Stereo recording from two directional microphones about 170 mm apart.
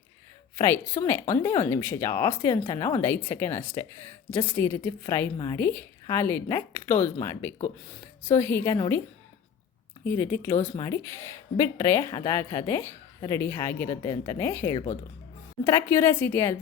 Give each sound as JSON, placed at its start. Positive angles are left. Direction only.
{"t": 0.6, "sound": "speech", "side_deg": 15}
{"t": 10.0, "sound": "speech", "side_deg": 15}